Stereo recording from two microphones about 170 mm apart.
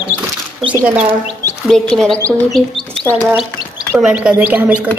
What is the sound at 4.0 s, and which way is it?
Speech, 5° right (ahead or behind).